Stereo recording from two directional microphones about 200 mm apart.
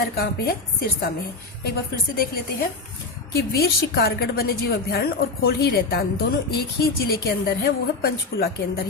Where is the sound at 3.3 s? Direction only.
50° left (ahead or behind).